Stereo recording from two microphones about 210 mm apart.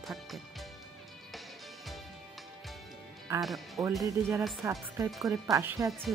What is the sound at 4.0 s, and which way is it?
Speech, 15° right (ahead or behind).